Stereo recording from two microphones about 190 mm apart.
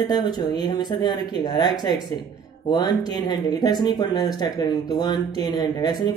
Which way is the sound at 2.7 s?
20° left (ahead or behind).